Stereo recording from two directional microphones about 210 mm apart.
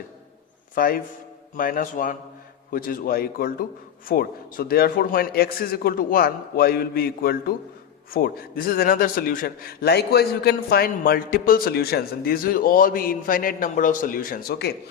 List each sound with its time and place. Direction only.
0.8 s a man's voice: 45° left (ahead or behind)